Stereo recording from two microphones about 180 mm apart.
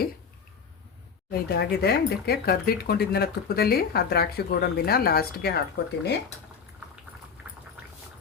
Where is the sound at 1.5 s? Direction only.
65° left (ahead or behind).